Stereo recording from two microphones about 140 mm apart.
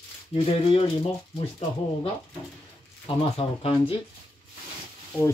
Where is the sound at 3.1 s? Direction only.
40° left (ahead or behind).